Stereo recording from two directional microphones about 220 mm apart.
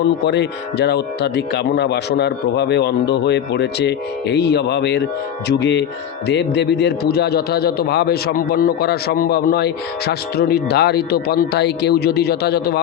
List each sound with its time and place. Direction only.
0.3 s a man's voice: 50° left (ahead or behind)